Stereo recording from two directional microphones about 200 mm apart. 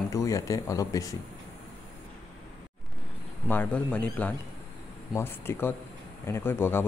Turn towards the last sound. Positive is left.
turn(degrees=10)  # may be behind; listen again after turning